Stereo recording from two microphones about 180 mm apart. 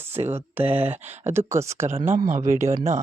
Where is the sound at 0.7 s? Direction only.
10° right (ahead or behind).